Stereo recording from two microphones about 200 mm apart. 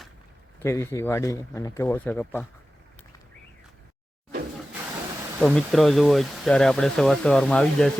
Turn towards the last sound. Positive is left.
turn(degrees=5)  # may be behind; listen again after turning